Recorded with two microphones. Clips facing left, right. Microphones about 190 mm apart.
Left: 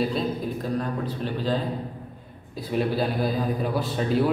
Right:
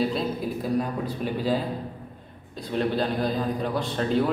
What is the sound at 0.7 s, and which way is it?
Speech, 10° right (ahead or behind).